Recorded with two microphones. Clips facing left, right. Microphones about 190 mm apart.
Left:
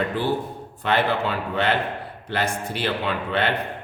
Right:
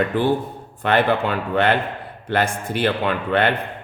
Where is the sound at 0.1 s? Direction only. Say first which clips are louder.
Right 4 dB; 55° right (ahead or behind).